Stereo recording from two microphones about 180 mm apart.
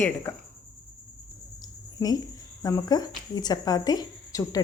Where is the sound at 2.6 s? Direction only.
20° left (ahead or behind).